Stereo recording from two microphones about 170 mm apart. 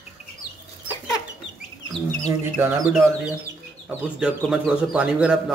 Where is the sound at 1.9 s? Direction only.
20° right (ahead or behind).